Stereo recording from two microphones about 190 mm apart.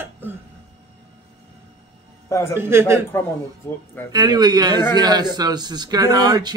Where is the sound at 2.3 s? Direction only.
15° left (ahead or behind).